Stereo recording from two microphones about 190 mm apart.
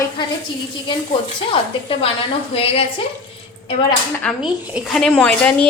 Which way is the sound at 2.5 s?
30° left (ahead or behind).